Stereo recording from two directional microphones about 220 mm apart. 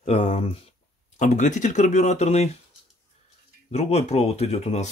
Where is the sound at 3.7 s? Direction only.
30° left (ahead or behind).